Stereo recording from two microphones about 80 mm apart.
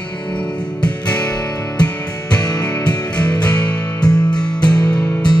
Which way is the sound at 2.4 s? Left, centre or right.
Left.